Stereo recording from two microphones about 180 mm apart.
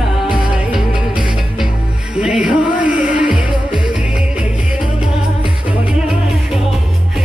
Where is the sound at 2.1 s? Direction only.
5° right (ahead or behind).